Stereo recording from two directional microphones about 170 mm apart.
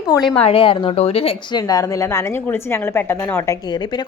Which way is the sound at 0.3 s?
35° left (ahead or behind).